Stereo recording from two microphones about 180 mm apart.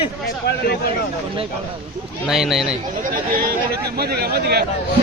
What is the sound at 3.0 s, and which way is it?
Speech, 50° right (ahead or behind).